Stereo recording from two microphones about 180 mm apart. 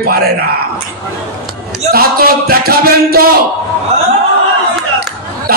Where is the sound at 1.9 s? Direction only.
55° right (ahead or behind).